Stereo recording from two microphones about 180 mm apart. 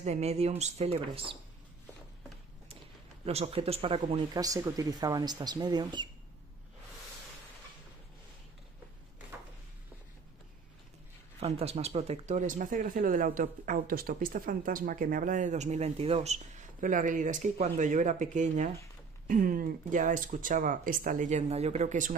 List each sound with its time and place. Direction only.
0.0 s speech: 35° right (ahead or behind)
3.3 s speech: 35° right (ahead or behind)
4.4 s speech: 20° right (ahead or behind)
11.3 s speech: 35° right (ahead or behind)